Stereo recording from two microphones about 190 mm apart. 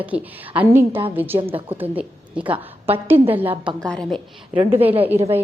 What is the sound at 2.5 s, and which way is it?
Speech, 30° right (ahead or behind).